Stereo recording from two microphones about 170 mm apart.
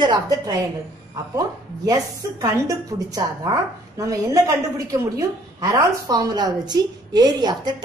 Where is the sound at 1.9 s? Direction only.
20° right (ahead or behind).